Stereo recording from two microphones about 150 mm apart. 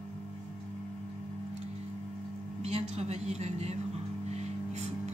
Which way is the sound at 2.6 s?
45° right (ahead or behind).